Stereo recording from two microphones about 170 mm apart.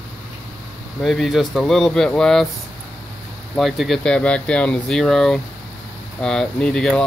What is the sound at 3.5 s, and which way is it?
Speech, centre (ahead or behind).